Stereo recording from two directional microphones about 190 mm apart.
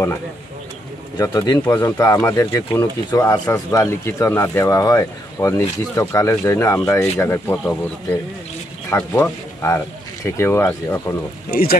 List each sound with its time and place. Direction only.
1.1 s speech: 20° left (ahead or behind)
11.5 s speech: 50° left (ahead or behind)